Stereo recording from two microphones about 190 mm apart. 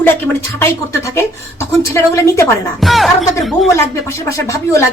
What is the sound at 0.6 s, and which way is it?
A woman's voice, 15° left (ahead or behind).